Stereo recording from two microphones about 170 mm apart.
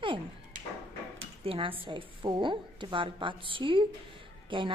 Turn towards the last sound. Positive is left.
turn(degrees=-30)  # may be behind; listen again after turning